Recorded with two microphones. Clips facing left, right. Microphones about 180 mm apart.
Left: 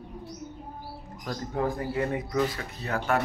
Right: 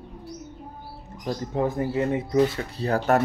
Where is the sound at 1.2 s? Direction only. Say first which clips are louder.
Right 4 dB; 20° right (ahead or behind).